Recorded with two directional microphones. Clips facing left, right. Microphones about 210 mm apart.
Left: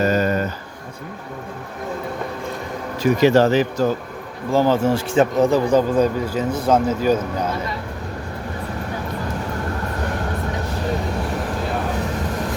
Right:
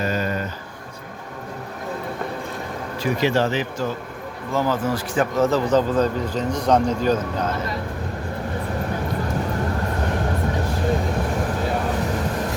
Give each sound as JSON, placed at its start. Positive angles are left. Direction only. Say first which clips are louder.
{"t": 0.0, "sound": "a sound", "louder": "left 6 dB", "side_deg": 40}
{"t": 3.0, "sound": "speech", "louder": "left 6 dB", "side_deg": 45}
{"t": 4.5, "sound": "speech", "louder": "left 5 dB", "side_deg": 30}
{"t": 5.5, "sound": "speech", "louder": "left 2 dB", "side_deg": 10}